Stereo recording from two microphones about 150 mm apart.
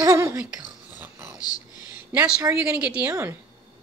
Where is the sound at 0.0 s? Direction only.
20° right (ahead or behind).